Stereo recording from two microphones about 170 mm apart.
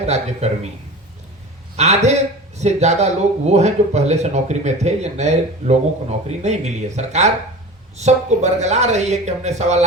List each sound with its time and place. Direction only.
0.0 s speech: 40° right (ahead or behind)
1.7 s speech: 40° right (ahead or behind)